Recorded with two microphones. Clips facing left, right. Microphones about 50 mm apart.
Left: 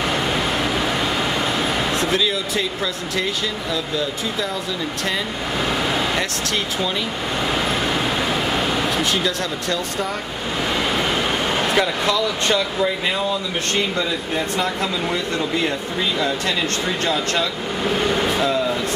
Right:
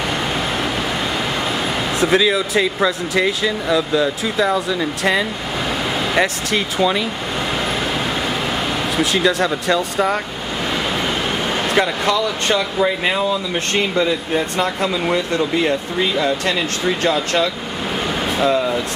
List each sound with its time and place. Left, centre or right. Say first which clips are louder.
2.0 s speech: right 5 dB; centre
6.1 s speech: right 5 dB; centre
8.9 s speech: right 4 dB; centre
11.7 s speech: right 4 dB; centre
13.7 s speech: right 5 dB; centre
18.0 s air conditioning: right 3 dB; centre